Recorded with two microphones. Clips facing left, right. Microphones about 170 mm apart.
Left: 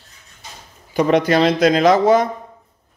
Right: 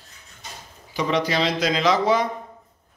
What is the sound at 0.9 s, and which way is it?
Speech, 50° left (ahead or behind).